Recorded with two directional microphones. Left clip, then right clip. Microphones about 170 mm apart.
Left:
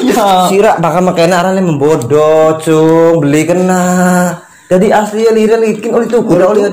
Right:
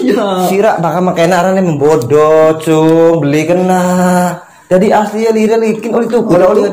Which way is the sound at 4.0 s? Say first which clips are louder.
Even; 15° left (ahead or behind).